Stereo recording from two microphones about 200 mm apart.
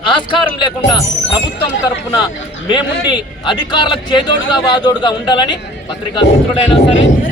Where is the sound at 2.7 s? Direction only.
20° left (ahead or behind).